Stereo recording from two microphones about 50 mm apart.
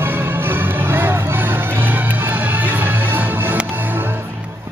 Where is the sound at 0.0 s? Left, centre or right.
Right.